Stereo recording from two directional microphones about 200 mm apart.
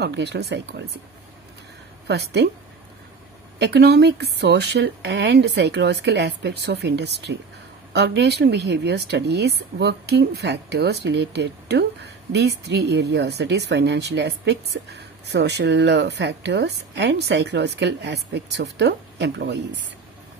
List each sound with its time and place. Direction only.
0.0 s speech: 60° right (ahead or behind)
2.0 s speech: 55° right (ahead or behind)
3.5 s speech: 55° right (ahead or behind)